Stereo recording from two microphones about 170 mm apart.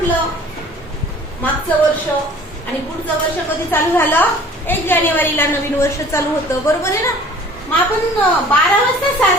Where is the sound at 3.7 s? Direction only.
10° left (ahead or behind).